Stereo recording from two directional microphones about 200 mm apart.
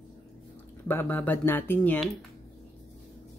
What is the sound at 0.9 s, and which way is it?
Speech, 10° left (ahead or behind).